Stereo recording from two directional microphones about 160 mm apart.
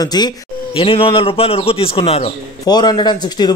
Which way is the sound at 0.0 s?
25° left (ahead or behind).